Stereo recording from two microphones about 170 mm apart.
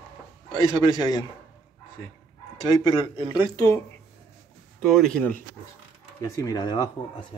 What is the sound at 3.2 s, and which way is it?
Speech, 25° left (ahead or behind).